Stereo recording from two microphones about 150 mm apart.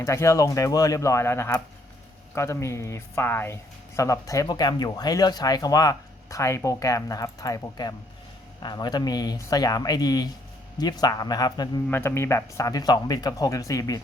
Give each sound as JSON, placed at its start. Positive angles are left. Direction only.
{"t": 0.0, "sound": "speech", "side_deg": 20}
{"t": 11.9, "sound": "speech", "side_deg": 15}